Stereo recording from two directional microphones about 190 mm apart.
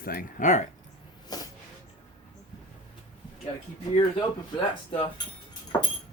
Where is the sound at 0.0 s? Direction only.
50° left (ahead or behind).